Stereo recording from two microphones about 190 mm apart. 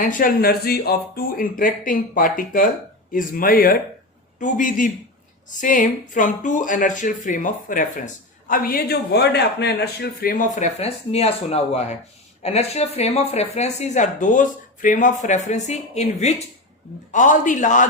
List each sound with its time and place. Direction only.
0.0 s speech: 45° left (ahead or behind)